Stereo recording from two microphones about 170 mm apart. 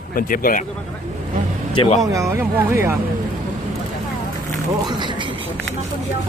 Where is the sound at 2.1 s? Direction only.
15° right (ahead or behind).